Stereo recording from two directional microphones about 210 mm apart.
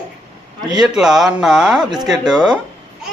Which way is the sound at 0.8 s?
5° right (ahead or behind).